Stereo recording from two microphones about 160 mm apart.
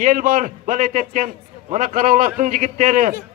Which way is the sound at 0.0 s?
55° right (ahead or behind).